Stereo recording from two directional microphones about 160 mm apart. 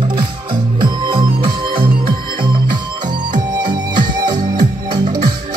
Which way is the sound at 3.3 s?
30° right (ahead or behind).